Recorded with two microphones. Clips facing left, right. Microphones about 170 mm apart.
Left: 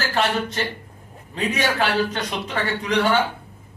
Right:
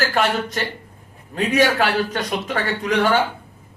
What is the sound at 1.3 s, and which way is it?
A man's voice, 45° right (ahead or behind).